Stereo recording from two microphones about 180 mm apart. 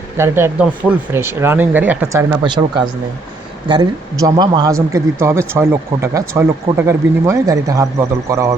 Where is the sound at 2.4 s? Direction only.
25° right (ahead or behind).